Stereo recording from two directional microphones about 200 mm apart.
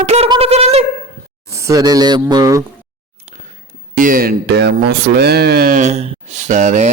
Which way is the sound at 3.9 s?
40° right (ahead or behind).